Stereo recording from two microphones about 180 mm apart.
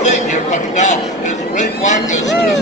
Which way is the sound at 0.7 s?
40° left (ahead or behind).